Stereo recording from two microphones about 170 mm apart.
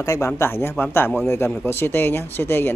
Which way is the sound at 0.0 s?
20° left (ahead or behind).